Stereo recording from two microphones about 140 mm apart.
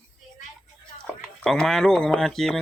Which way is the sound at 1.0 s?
Centre (ahead or behind).